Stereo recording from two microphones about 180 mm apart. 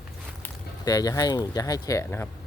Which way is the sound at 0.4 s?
20° left (ahead or behind).